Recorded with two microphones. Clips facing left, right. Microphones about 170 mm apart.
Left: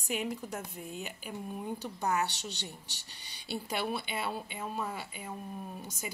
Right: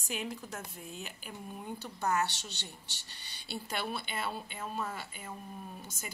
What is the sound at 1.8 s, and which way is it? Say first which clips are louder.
Speech: right 1 dB; 15° left (ahead or behind).